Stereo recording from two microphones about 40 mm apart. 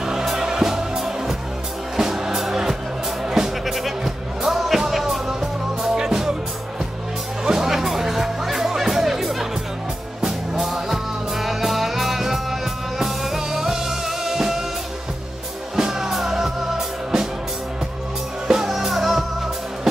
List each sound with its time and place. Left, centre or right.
0.0 s music: centre
3.6 s music: centre
7.4 s music: centre
15.7 s music: centre
18.5 s music: centre